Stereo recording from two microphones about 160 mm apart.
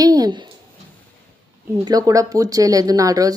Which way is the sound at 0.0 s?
25° right (ahead or behind).